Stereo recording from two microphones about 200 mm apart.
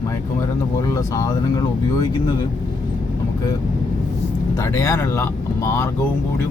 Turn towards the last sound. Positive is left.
turn(degrees=15)  # may be behind; listen again after turning